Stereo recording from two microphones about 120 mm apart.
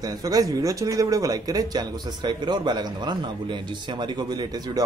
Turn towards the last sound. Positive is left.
turn(degrees=-35)  # may be behind; listen again after turning